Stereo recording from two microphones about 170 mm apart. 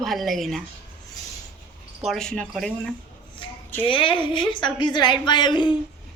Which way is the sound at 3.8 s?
30° left (ahead or behind).